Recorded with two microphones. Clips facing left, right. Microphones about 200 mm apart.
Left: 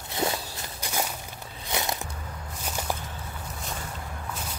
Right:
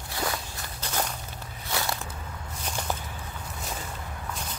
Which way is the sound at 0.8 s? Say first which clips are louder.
Even; 10° left (ahead or behind).